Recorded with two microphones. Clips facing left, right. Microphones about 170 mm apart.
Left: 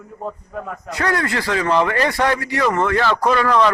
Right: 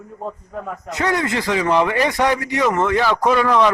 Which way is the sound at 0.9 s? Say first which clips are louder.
Right 1 dB; 20° right (ahead or behind).